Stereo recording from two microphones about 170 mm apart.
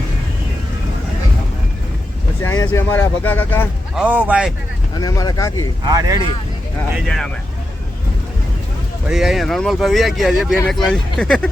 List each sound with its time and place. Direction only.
2.4 s speech: 15° left (ahead or behind)
3.9 s speech: 10° right (ahead or behind)
4.9 s speech: 20° left (ahead or behind)
5.8 s speech: 20° right (ahead or behind)
6.9 s speech: centre (ahead or behind)
9.0 s speech: centre (ahead or behind)